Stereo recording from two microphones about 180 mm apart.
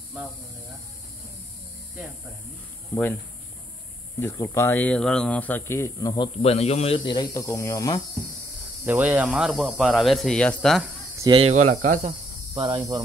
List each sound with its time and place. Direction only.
2.9 s speech: 10° left (ahead or behind)
4.2 s speech: 15° left (ahead or behind)
8.8 s speech: 10° right (ahead or behind)
11.1 s speech: 25° right (ahead or behind)
11.4 s speech: 40° right (ahead or behind)
12.5 s cricket: 25° right (ahead or behind)